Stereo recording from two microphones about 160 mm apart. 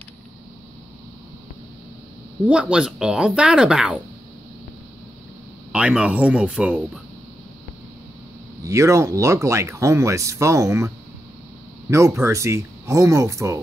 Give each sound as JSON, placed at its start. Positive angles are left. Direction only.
{"t": 2.4, "sound": "speech", "side_deg": -5}
{"t": 5.7, "sound": "speech", "side_deg": -5}
{"t": 8.6, "sound": "speech", "side_deg": -20}
{"t": 11.9, "sound": "speech", "side_deg": -20}